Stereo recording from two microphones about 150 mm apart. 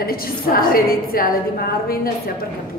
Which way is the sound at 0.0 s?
80° left.